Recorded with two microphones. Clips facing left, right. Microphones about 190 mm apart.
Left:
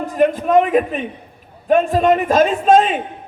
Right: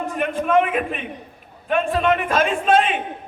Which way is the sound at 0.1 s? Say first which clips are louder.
Left 6 dB; 35° left (ahead or behind).